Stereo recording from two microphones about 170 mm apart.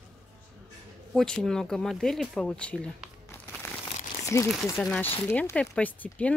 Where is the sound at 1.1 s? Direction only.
Centre (ahead or behind).